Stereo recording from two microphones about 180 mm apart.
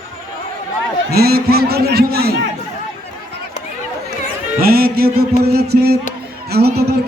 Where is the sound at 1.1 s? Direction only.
60° right (ahead or behind).